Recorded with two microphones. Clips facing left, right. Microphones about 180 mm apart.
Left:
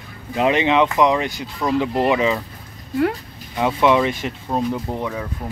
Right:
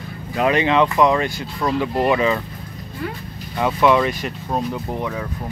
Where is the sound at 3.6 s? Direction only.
20° left (ahead or behind).